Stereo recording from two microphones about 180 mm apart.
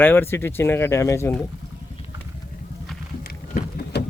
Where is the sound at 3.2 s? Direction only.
55° left (ahead or behind).